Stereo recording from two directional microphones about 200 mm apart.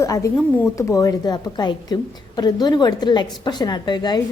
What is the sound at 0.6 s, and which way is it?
A woman's voice, 10° left (ahead or behind).